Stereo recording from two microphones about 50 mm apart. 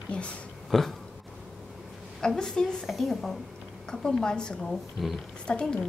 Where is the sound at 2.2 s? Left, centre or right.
Centre.